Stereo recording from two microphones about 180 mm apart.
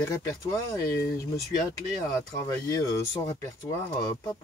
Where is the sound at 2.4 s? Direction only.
20° left (ahead or behind).